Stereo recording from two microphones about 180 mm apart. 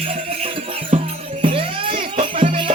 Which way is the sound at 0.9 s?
35° right (ahead or behind).